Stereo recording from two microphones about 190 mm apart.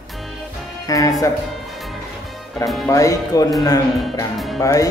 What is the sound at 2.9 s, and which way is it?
Speech, 15° left (ahead or behind).